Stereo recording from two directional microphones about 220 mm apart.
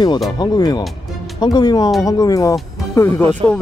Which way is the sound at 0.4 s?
20° left (ahead or behind).